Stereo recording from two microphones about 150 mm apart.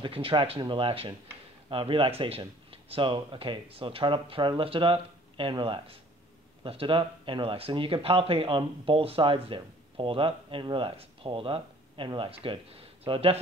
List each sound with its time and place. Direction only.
0.0 s speech: 35° right (ahead or behind)